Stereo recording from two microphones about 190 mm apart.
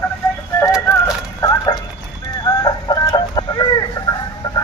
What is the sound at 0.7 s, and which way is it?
Music, 5° right (ahead or behind).